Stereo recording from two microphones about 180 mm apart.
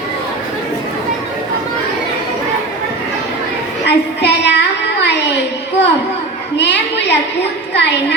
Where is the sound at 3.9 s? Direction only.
70° left (ahead or behind).